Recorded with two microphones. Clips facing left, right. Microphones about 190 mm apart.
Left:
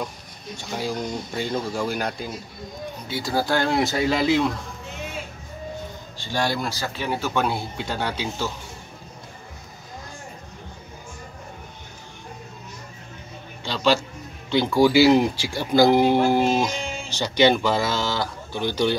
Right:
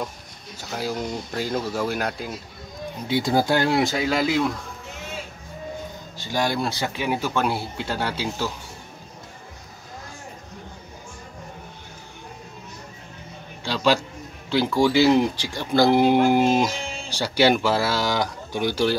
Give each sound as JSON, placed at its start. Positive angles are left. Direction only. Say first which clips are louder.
{"t": 0.6, "sound": "speech", "louder": "even", "side_deg": 0}
{"t": 3.1, "sound": "speech", "louder": "right 4 dB", "side_deg": -20}
{"t": 6.2, "sound": "speech", "louder": "right 1 dB", "side_deg": -15}
{"t": 13.7, "sound": "a sound", "louder": "even", "side_deg": -10}
{"t": 14.5, "sound": "speech", "louder": "left 2 dB", "side_deg": 0}
{"t": 16.1, "sound": "speech", "louder": "right 1 dB", "side_deg": -10}